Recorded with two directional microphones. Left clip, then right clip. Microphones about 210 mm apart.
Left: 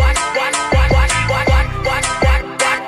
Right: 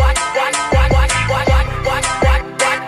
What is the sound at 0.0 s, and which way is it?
Music, centre (ahead or behind).